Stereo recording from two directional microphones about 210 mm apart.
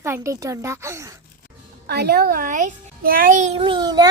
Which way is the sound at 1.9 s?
50° right (ahead or behind).